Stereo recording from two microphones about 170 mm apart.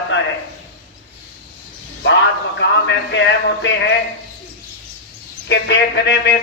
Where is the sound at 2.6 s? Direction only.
90° left.